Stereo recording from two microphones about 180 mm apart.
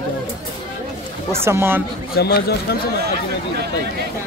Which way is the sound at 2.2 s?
60° left (ahead or behind).